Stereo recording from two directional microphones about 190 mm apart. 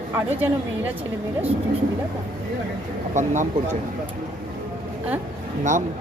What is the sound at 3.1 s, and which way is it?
Speech, 40° right (ahead or behind).